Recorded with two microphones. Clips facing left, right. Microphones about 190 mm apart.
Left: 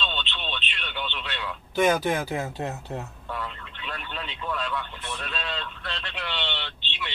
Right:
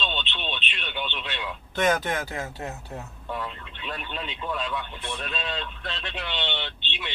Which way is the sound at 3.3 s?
15° right (ahead or behind).